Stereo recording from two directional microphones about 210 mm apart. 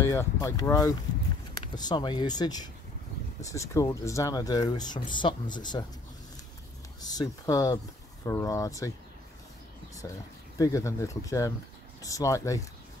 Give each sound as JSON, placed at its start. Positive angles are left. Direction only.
{"t": 0.0, "sound": "speech", "side_deg": 15}
{"t": 7.0, "sound": "speech", "side_deg": 20}
{"t": 10.6, "sound": "speech", "side_deg": 15}